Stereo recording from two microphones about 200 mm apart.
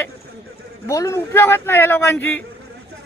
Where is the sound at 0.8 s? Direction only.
15° left (ahead or behind).